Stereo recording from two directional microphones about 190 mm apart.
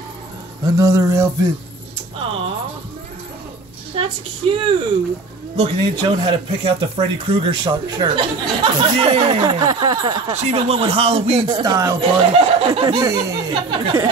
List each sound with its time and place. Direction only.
0.7 s speech: 15° right (ahead or behind)
2.1 s speech: 30° right (ahead or behind)
3.9 s speech: 30° right (ahead or behind)
12.0 s speech: 30° right (ahead or behind)
13.0 s speech: 15° right (ahead or behind)